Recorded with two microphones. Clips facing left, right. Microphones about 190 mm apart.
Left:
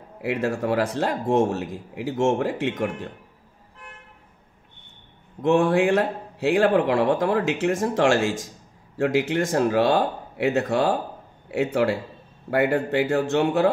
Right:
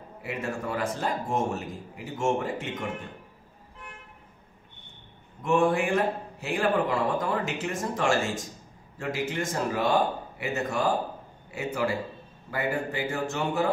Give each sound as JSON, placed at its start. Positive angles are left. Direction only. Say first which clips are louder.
{"t": 0.2, "sound": "a man's voice", "louder": "left 8 dB", "side_deg": 70}
{"t": 5.4, "sound": "a man's voice", "louder": "left 5 dB", "side_deg": 75}